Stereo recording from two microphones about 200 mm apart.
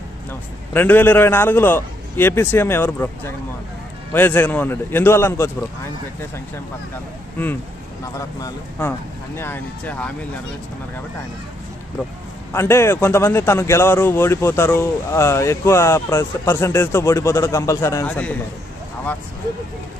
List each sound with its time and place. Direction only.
0.3 s a man's voice: 10° left (ahead or behind)
8.2 s a man's voice: 15° left (ahead or behind)
12.5 s a man's voice: 10° left (ahead or behind)